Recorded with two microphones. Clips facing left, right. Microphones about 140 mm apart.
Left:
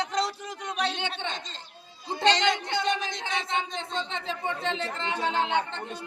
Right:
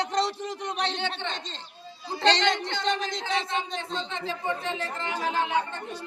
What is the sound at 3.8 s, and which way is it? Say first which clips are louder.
Speech: even; 25° left (ahead or behind).